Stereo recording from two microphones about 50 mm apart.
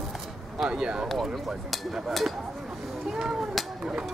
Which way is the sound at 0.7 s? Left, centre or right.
Centre.